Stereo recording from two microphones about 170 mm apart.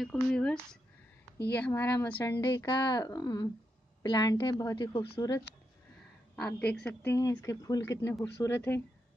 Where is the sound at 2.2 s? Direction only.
25° left (ahead or behind).